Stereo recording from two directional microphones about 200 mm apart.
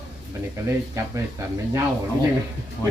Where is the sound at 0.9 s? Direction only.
15° right (ahead or behind).